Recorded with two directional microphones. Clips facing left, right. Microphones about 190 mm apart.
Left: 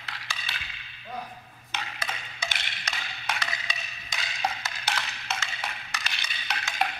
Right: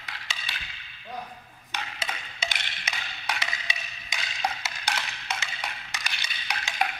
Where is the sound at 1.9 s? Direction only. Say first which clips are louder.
Even; 25° right (ahead or behind).